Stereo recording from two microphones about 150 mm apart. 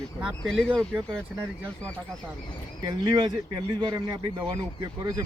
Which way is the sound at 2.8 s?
30° right (ahead or behind).